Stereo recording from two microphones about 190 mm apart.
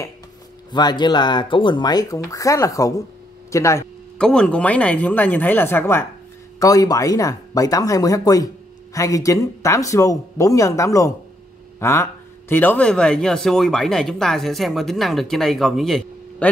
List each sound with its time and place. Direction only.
0.7 s speech: 20° left (ahead or behind)
4.2 s speech: 5° left (ahead or behind)